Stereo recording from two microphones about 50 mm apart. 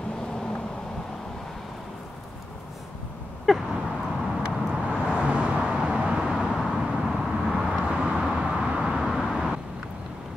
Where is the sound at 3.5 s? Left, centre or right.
Centre.